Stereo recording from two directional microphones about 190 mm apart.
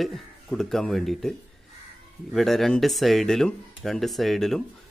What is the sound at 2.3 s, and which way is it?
Speech, centre (ahead or behind).